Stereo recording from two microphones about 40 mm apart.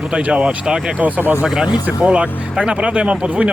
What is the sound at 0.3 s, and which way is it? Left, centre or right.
Speech, centre.